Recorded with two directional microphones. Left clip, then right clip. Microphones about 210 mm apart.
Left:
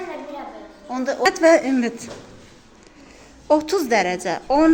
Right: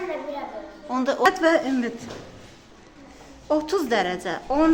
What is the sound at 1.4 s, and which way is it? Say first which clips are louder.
Speech: left 6 dB; 15° left (ahead or behind).